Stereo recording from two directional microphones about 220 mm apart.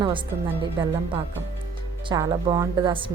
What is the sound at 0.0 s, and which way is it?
A woman's voice, 20° right (ahead or behind).